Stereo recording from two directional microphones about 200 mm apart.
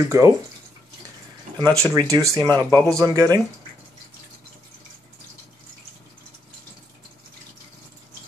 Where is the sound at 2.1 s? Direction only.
15° right (ahead or behind).